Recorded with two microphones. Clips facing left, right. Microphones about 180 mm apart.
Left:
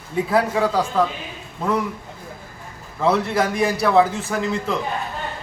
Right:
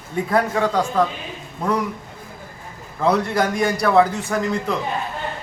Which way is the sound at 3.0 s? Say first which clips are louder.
Even; centre (ahead or behind).